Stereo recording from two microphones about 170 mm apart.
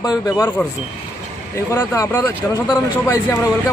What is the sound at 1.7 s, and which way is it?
Speech, 15° left (ahead or behind).